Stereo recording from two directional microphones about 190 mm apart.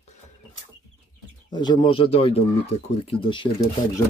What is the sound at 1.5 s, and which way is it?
Speech, 25° left (ahead or behind).